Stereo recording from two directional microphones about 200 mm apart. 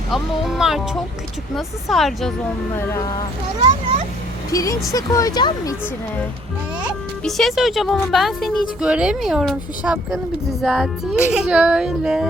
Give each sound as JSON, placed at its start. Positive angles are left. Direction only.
{"t": 0.1, "sound": "speech", "side_deg": 0}
{"t": 2.7, "sound": "speech", "side_deg": 15}
{"t": 4.5, "sound": "speech", "side_deg": 15}
{"t": 7.3, "sound": "speech", "side_deg": 0}